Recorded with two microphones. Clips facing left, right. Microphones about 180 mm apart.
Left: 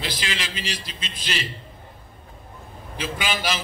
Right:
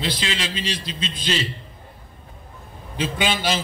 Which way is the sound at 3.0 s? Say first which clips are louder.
Right 4 dB; 25° right (ahead or behind).